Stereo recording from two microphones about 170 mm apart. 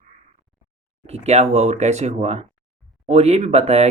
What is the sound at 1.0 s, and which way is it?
Speech, 40° right (ahead or behind).